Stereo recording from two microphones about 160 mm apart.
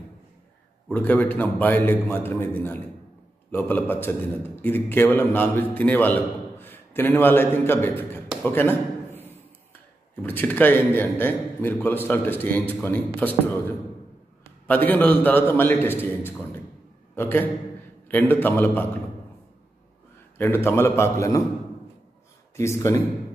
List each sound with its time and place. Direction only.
0.8 s a man's voice: 10° left (ahead or behind)
8.5 s a sound: 15° left (ahead or behind)
10.2 s a man's voice: 10° left (ahead or behind)
20.3 s a man's voice: 15° left (ahead or behind)
22.6 s a man's voice: 20° left (ahead or behind)